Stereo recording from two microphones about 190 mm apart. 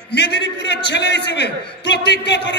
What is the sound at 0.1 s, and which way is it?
A man's voice, 60° left (ahead or behind).